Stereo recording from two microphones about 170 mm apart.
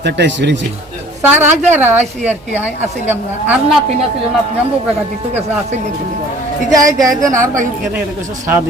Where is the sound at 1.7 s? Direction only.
10° right (ahead or behind).